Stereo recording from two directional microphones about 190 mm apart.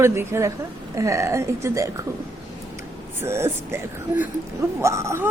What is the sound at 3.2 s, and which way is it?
Speech, 15° right (ahead or behind).